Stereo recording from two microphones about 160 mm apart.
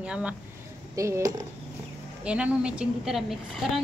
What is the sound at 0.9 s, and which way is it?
Speech, 20° right (ahead or behind).